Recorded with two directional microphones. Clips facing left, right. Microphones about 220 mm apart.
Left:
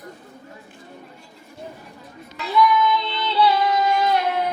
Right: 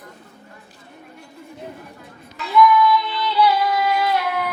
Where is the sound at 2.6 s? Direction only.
25° left (ahead or behind).